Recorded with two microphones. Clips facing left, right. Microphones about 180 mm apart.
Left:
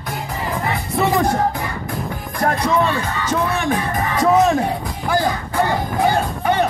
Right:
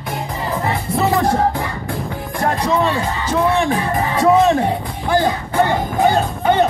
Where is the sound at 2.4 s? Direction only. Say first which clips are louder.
Even; 30° right (ahead or behind).